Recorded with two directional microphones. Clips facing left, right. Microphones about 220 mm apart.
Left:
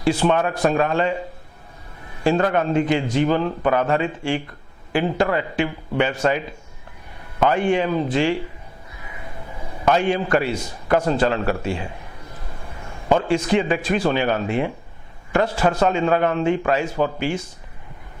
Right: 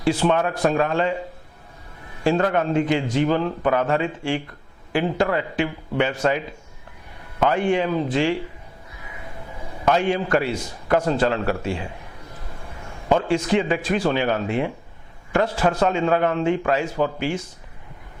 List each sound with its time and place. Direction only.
0.0 s a man's voice: 15° left (ahead or behind)
2.2 s a man's voice: 15° left (ahead or behind)
9.8 s a man's voice: 15° left (ahead or behind)
13.1 s a man's voice: 15° left (ahead or behind)